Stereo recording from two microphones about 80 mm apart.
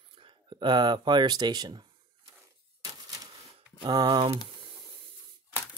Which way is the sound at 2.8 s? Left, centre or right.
Right.